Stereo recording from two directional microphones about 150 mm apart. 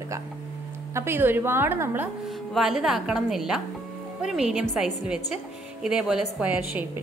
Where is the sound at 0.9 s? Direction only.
15° right (ahead or behind).